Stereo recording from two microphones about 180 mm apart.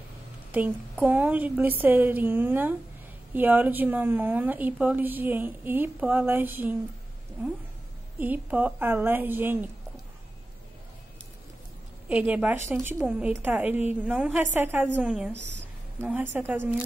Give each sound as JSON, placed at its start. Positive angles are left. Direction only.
{"t": 0.5, "sound": "a woman's voice", "side_deg": -10}
{"t": 8.2, "sound": "a woman's voice", "side_deg": -10}
{"t": 12.1, "sound": "a woman's voice", "side_deg": -5}
{"t": 15.3, "sound": "a woman's voice", "side_deg": -80}
{"t": 16.1, "sound": "a woman's voice", "side_deg": -10}